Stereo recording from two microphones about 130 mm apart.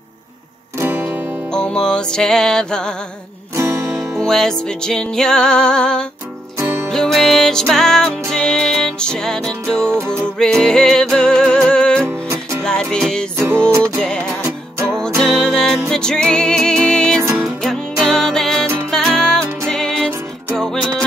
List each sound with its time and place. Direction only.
0.7 s music: 15° right (ahead or behind)
1.5 s music: 5° left (ahead or behind)
3.5 s music: 20° right (ahead or behind)
4.2 s music: 5° left (ahead or behind)
12.1 s music: 20° right (ahead or behind)
12.6 s music: 5° left (ahead or behind)
13.7 s music: 20° right (ahead or behind)
13.9 s music: 5° left (ahead or behind)
14.4 s music: 20° right (ahead or behind)
15.1 s music: 5° left (ahead or behind)